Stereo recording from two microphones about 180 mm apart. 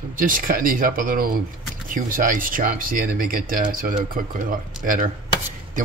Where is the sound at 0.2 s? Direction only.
50° right (ahead or behind).